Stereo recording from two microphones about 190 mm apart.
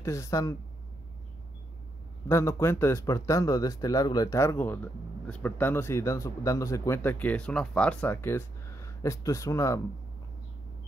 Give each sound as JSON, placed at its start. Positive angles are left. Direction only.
{"t": 0.0, "sound": "speech", "side_deg": 15}
{"t": 2.2, "sound": "speech", "side_deg": 15}